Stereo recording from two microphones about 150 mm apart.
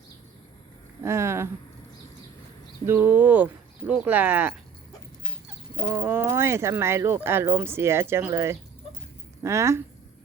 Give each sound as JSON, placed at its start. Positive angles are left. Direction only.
{"t": 1.0, "sound": "speech", "side_deg": -20}
{"t": 2.8, "sound": "speech", "side_deg": -15}
{"t": 5.9, "sound": "speech", "side_deg": -15}